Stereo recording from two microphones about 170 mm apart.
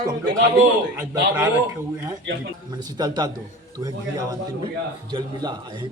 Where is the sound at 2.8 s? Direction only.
25° right (ahead or behind).